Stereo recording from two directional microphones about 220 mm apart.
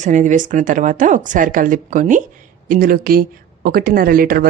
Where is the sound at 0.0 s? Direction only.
35° right (ahead or behind).